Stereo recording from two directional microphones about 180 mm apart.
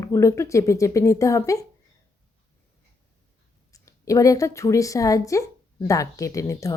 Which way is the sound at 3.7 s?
20° left (ahead or behind).